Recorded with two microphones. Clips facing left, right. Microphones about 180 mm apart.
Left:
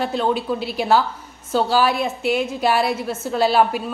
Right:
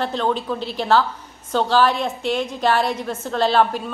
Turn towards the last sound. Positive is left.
turn(degrees=10)  # may be behind; listen again after turning